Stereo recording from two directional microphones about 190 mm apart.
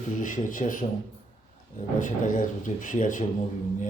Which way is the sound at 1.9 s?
45° left (ahead or behind).